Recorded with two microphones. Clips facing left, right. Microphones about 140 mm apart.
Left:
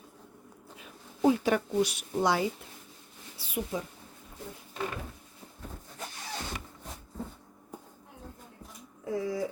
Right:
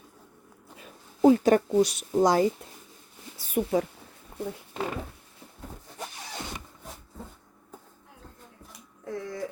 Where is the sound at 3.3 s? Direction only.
45° right (ahead or behind).